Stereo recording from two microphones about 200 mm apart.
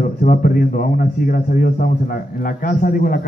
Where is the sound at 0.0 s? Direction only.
45° left (ahead or behind).